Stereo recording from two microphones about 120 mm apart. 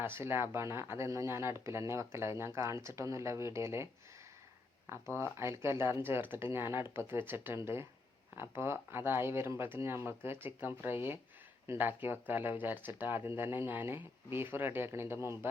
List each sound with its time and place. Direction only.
0.0 s speech: 20° right (ahead or behind)
4.9 s speech: 20° right (ahead or behind)